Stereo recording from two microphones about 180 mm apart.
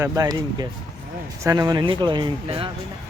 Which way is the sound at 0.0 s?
20° right (ahead or behind).